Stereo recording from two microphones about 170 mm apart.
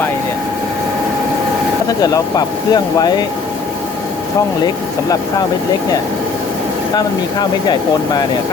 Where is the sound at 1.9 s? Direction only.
20° left (ahead or behind).